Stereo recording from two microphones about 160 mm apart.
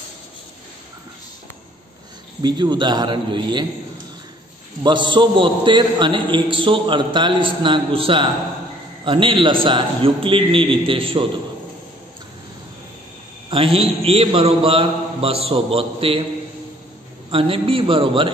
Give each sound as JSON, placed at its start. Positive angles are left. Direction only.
{"t": 2.4, "sound": "a man's voice", "side_deg": -30}
{"t": 4.8, "sound": "a man's voice", "side_deg": -30}
{"t": 13.7, "sound": "a man's voice", "side_deg": -35}
{"t": 17.3, "sound": "a man's voice", "side_deg": -35}